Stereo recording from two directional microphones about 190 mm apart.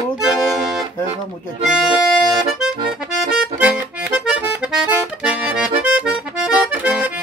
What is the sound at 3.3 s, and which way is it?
Accordion, 5° right (ahead or behind).